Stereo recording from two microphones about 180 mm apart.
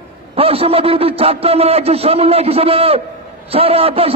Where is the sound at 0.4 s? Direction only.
35° right (ahead or behind).